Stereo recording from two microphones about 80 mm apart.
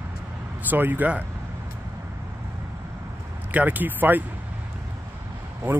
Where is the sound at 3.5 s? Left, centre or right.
Right.